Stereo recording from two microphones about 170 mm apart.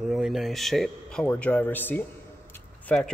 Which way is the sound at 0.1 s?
Centre (ahead or behind).